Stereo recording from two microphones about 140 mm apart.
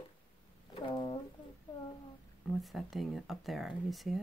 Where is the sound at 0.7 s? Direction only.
35° left (ahead or behind).